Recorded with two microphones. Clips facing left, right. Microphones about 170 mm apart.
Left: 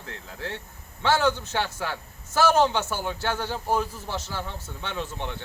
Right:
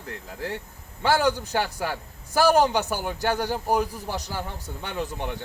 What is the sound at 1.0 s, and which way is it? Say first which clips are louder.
A man's voice: right 1 dB; 10° right (ahead or behind).